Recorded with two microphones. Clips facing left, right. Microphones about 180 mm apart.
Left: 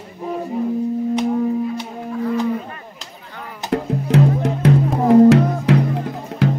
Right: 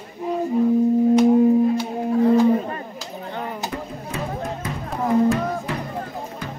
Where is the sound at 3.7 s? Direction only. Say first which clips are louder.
Left 12 dB; 75° left (ahead or behind).